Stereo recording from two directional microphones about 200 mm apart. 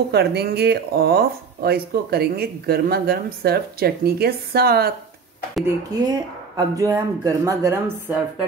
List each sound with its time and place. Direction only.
0.1 s speech: 55° right (ahead or behind)
5.9 s speech: 20° right (ahead or behind)